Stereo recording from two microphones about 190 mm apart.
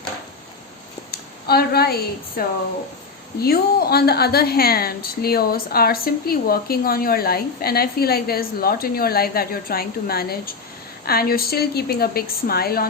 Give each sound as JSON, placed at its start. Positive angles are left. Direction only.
{"t": 1.1, "sound": "a woman's voice", "side_deg": 55}